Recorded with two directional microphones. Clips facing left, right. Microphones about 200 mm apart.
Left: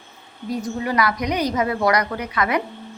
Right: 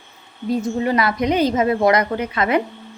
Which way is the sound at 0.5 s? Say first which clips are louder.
Right 4 dB; 25° right (ahead or behind).